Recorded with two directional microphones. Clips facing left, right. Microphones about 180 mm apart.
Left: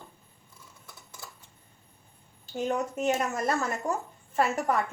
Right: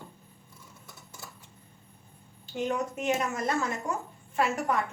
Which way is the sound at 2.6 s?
40° left (ahead or behind).